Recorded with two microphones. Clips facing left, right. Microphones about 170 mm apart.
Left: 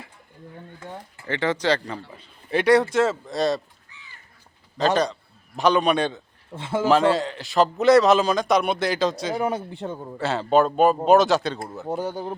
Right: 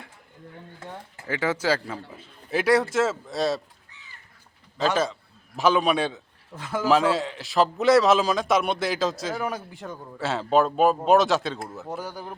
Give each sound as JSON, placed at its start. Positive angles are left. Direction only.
{"t": 1.3, "sound": "a man's voice", "side_deg": -5}
{"t": 5.5, "sound": "a man's voice", "side_deg": 0}
{"t": 6.5, "sound": "a man's voice", "side_deg": 25}
{"t": 6.8, "sound": "a man's voice", "side_deg": 0}
{"t": 9.3, "sound": "a man's voice", "side_deg": 25}
{"t": 10.2, "sound": "a man's voice", "side_deg": 0}
{"t": 11.9, "sound": "a man's voice", "side_deg": 20}